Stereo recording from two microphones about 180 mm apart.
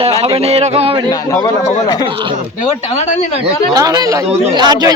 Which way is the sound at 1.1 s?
20° left (ahead or behind).